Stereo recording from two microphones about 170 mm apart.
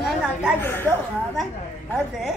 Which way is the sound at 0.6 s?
15° left (ahead or behind).